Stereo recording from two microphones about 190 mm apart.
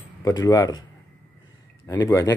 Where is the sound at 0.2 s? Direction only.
20° left (ahead or behind).